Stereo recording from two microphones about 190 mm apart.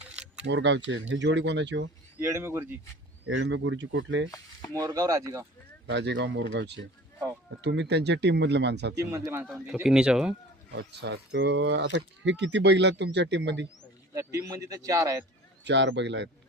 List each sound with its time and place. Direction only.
0.1 s keys jangling: 5° right (ahead or behind)
0.4 s speech: 70° right (ahead or behind)
2.1 s speech: 15° right (ahead or behind)
3.2 s speech: 75° right (ahead or behind)
4.7 s speech: 15° right (ahead or behind)
5.9 s speech: 70° right (ahead or behind)
9.1 s speech: 15° right (ahead or behind)
9.5 s speech: centre (ahead or behind)
10.7 s speech: 65° right (ahead or behind)
14.1 s speech: 15° right (ahead or behind)
15.6 s speech: 65° right (ahead or behind)